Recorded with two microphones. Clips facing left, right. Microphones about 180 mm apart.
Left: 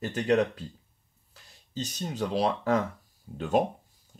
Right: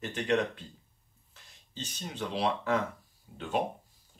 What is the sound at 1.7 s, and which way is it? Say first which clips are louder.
Speech: left 7 dB; 40° left (ahead or behind).